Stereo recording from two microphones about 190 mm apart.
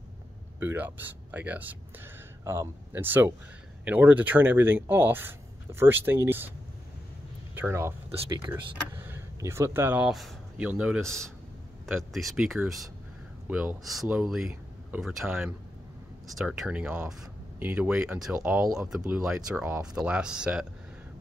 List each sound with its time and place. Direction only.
0.6 s speech: 10° right (ahead or behind)
7.5 s speech: 10° right (ahead or behind)
8.4 s speech: 25° right (ahead or behind)
8.9 s speech: 10° right (ahead or behind)